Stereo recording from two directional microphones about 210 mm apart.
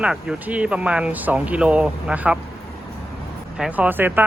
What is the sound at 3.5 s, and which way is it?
Speech, 5° right (ahead or behind).